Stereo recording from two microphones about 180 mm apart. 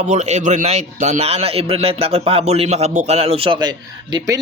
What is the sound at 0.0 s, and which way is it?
A man's voice, 40° right (ahead or behind).